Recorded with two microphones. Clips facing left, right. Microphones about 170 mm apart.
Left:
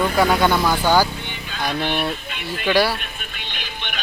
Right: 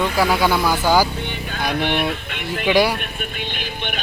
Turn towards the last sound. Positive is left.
turn(degrees=-50)  # may be behind; listen again after turning